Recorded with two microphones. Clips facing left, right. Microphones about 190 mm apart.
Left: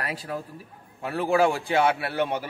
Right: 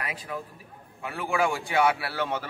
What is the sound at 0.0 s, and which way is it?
A man's voice, 40° left (ahead or behind).